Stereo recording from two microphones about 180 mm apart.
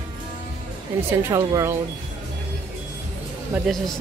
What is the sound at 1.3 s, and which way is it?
Speech, 15° right (ahead or behind).